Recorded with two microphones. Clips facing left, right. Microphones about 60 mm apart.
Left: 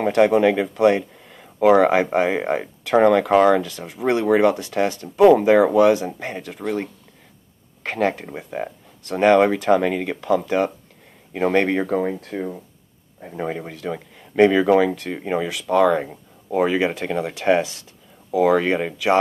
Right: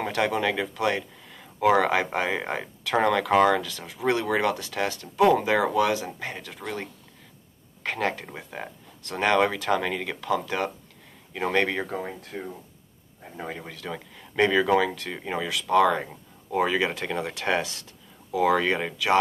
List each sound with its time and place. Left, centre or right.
0.0 s speech: left
6.6 s speech: centre
9.2 s speech: centre
13.6 s speech: centre